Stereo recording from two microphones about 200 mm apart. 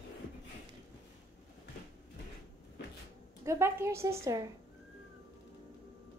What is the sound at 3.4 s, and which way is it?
A woman's voice, 15° right (ahead or behind).